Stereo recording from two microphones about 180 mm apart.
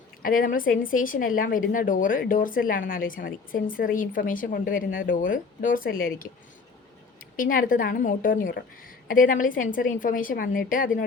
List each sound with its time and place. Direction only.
0.2 s speech: 50° left (ahead or behind)
7.3 s speech: 50° left (ahead or behind)